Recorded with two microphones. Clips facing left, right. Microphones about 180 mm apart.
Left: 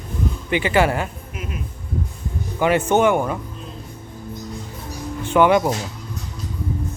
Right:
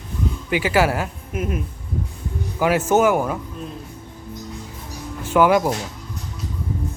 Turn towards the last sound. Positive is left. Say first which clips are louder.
# left 1 dB
turn(degrees=0)  # may be behind; listen again after turning